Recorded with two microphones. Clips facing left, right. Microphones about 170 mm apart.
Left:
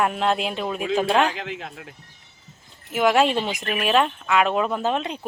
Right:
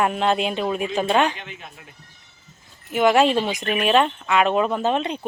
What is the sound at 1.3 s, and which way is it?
Speech, 90° left.